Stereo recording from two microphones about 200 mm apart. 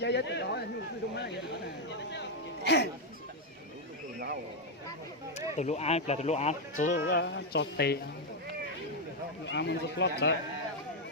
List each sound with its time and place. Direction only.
0.0 s speech: 60° left (ahead or behind)
2.6 s speech: 55° left (ahead or behind)
5.5 s speech: 35° left (ahead or behind)
6.9 s speech: 60° left (ahead or behind)
9.5 s speech: 60° left (ahead or behind)